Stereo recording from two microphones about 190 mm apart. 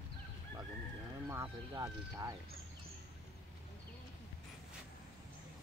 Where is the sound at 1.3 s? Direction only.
15° right (ahead or behind).